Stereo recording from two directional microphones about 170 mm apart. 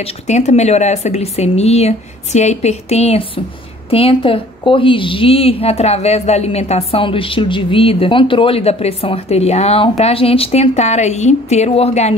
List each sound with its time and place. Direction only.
0.0 s a woman's voice: 40° left (ahead or behind)